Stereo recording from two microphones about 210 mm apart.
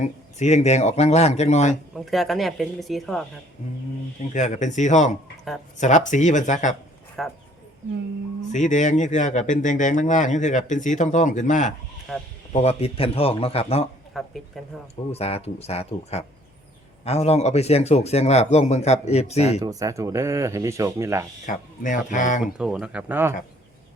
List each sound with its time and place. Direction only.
0.0 s speech: 35° left (ahead or behind)
2.0 s speech: centre (ahead or behind)
4.4 s speech: 35° left (ahead or behind)
7.2 s speech: centre (ahead or behind)
8.5 s speech: 35° left (ahead or behind)
12.1 s speech: centre (ahead or behind)
12.5 s a man's voice: 30° left (ahead or behind)
14.1 s speech: centre (ahead or behind)
15.1 s a man's voice: 30° left (ahead or behind)
19.6 s speech: 15° right (ahead or behind)
21.4 s speech: 40° left (ahead or behind)
22.5 s speech: 5° right (ahead or behind)